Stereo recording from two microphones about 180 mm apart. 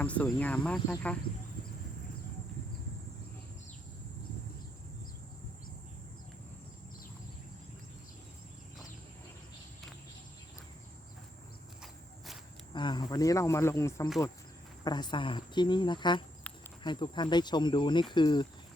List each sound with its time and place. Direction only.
0.0 s speech: 5° left (ahead or behind)
11.8 s walk: centre (ahead or behind)
12.7 s speech: 25° left (ahead or behind)